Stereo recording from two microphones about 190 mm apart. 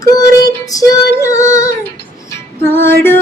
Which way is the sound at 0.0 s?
20° left (ahead or behind).